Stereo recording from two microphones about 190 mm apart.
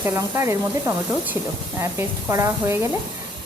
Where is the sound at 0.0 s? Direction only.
15° right (ahead or behind).